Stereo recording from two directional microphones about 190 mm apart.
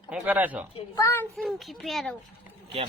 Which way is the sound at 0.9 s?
10° left (ahead or behind).